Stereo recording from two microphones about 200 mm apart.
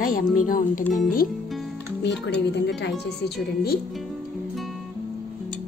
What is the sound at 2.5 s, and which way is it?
Speech, 60° left (ahead or behind).